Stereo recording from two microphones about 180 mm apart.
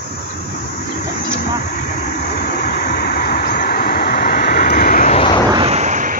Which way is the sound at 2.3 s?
50° left (ahead or behind).